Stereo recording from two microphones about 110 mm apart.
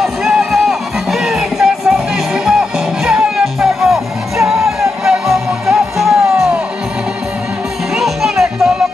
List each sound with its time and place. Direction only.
0.0 s music: 5° right (ahead or behind)
7.9 s music: 5° right (ahead or behind)